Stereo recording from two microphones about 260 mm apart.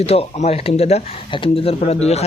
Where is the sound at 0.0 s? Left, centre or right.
Left.